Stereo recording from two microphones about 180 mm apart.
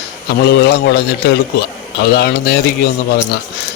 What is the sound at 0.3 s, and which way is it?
Speech, 65° left (ahead or behind).